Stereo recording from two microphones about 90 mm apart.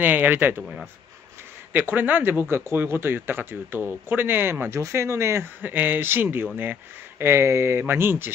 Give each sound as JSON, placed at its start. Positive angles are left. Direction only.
{"t": 0.0, "sound": "speech", "side_deg": -20}
{"t": 0.6, "sound": "speech", "side_deg": -10}
{"t": 1.7, "sound": "speech", "side_deg": -20}